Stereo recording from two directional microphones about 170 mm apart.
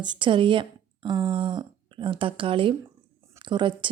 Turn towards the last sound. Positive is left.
turn(degrees=-30)  # may be behind; listen again after turning